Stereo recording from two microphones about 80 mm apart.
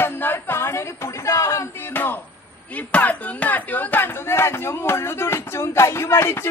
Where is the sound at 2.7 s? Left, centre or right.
Centre.